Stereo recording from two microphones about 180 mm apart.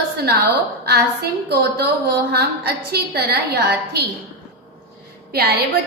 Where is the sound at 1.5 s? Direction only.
60° right (ahead or behind).